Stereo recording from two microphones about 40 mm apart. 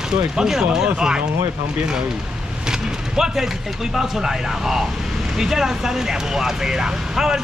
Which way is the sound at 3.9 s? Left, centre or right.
Centre.